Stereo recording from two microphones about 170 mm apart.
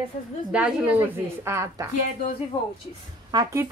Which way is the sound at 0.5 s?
5° right (ahead or behind).